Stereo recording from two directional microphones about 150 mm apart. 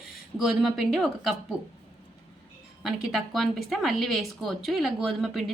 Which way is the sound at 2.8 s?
5° right (ahead or behind).